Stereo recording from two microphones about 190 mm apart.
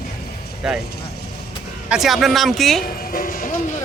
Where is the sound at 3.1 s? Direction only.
50° left (ahead or behind).